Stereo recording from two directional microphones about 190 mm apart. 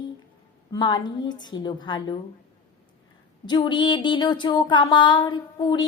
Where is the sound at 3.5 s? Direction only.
25° left (ahead or behind).